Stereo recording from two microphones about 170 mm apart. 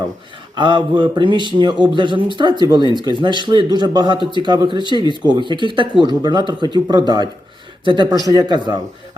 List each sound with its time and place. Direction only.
0.5 s speech: 25° right (ahead or behind)